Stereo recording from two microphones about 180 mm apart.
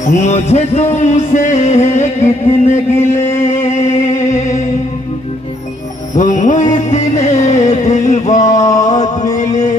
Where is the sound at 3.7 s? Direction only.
40° left (ahead or behind).